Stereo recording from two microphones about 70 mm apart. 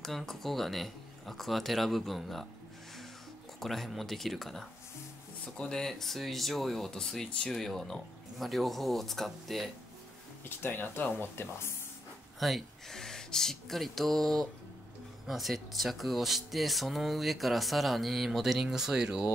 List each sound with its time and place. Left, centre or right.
0.0 s speech: centre
3.5 s speech: centre
5.4 s speech: centre
10.6 s speech: left
12.4 s speech: centre